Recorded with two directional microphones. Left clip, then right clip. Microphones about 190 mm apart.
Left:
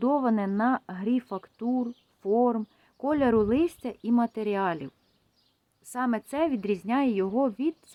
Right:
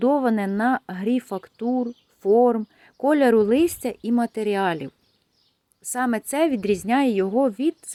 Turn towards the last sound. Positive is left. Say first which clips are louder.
# right 6 dB
turn(degrees=-15)  # may be behind; listen again after turning